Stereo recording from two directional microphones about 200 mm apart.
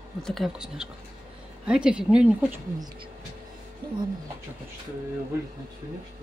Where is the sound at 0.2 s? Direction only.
Centre (ahead or behind).